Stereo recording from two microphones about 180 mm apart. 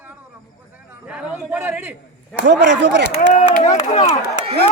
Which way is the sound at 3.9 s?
35° left (ahead or behind).